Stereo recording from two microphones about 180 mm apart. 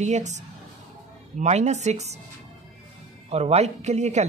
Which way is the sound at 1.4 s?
40° right (ahead or behind).